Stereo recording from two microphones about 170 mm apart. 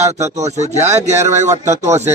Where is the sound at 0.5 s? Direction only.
40° right (ahead or behind).